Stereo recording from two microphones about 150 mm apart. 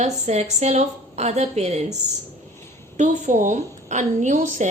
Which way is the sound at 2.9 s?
55° right (ahead or behind).